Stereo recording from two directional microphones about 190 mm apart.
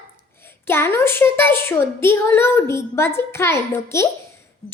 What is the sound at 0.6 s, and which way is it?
A child's voice, 10° left (ahead or behind).